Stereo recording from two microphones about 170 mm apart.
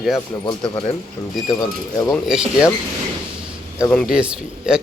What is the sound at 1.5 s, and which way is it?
Speech, 20° left (ahead or behind).